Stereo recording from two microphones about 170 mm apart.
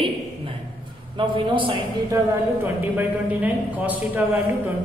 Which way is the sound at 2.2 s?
15° right (ahead or behind).